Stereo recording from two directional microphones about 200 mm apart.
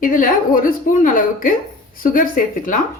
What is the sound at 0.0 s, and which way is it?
A woman's voice, 40° left (ahead or behind).